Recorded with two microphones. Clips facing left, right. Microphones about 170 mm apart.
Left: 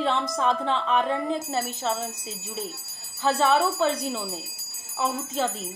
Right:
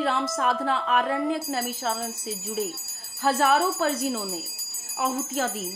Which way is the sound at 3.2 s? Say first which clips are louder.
Even; 10° right (ahead or behind).